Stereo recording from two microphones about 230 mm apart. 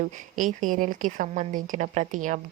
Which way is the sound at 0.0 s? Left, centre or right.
Right.